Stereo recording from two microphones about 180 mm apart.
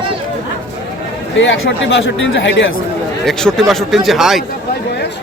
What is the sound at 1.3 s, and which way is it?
Speech, 90° left.